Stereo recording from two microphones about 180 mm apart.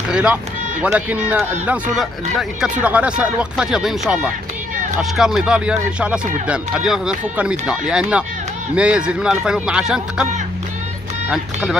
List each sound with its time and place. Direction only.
0.1 s speech: 5° right (ahead or behind)
11.2 s speech: 5° right (ahead or behind)